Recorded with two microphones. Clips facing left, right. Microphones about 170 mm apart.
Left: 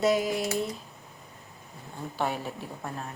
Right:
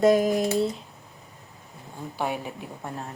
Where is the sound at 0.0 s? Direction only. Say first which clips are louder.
Right 6 dB; 50° right (ahead or behind).